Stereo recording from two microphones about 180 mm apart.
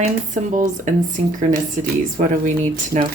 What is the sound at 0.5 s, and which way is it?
Speech, 45° right (ahead or behind).